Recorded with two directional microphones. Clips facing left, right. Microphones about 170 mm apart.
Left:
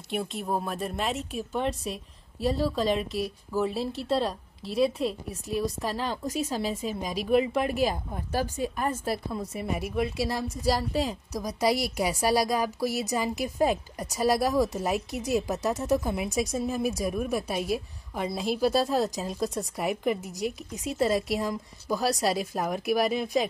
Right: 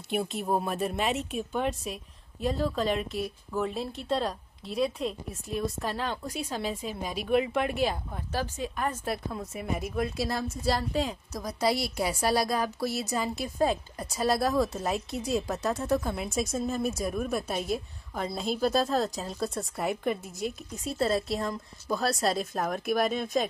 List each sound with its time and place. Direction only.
0.1 s speech: centre (ahead or behind)
6.2 s a woman's voice: 40° left (ahead or behind)
6.5 s speech: 5° left (ahead or behind)
8.1 s a woman's voice: 10° left (ahead or behind)
11.3 s a woman's voice: 15° left (ahead or behind)